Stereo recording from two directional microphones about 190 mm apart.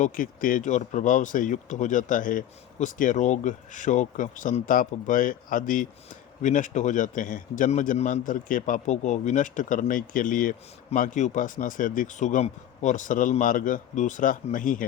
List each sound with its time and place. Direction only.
0.0 s speech: 45° left (ahead or behind)